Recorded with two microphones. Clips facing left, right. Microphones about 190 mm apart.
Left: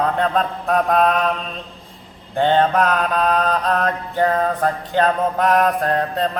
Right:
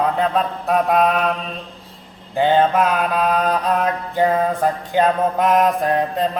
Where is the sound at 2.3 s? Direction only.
5° right (ahead or behind).